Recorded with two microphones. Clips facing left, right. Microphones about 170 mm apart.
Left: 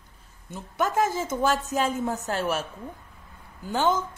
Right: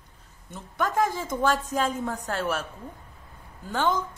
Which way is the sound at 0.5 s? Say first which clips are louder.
Left 1 dB; 5° left (ahead or behind).